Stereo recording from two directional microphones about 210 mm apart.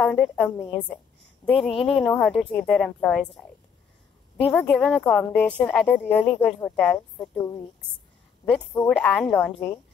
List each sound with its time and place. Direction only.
0.0 s speech: 5° left (ahead or behind)
4.5 s speech: 5° left (ahead or behind)
8.8 s speech: 5° left (ahead or behind)